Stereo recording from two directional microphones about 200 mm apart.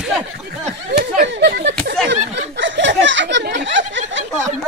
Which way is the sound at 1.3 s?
55° right (ahead or behind).